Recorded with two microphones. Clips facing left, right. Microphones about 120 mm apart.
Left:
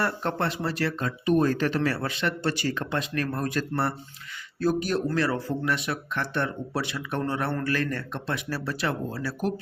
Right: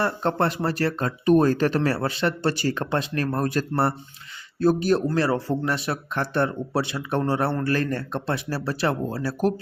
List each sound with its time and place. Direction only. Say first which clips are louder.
0.0 s speech: right 4 dB; 30° right (ahead or behind)
0.4 s speech: right 3 dB; 45° right (ahead or behind)